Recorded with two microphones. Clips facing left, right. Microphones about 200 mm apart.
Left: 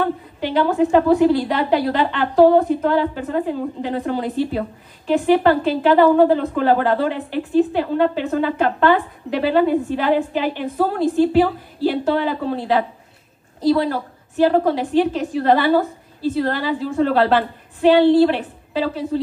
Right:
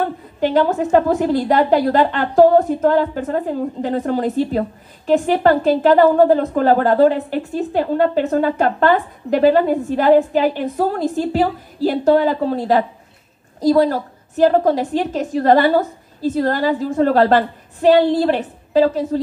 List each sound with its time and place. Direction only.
0.4 s a woman's voice: 45° right (ahead or behind)